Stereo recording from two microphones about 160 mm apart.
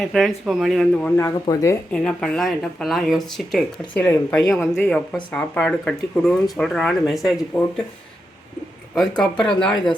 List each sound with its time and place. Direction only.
0.0 s speech: centre (ahead or behind)
1.1 s speech: 20° left (ahead or behind)
1.9 s speech: 5° left (ahead or behind)
9.0 s speech: 5° left (ahead or behind)